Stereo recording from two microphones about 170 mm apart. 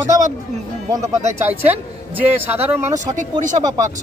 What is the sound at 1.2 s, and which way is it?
Speech, 40° right (ahead or behind).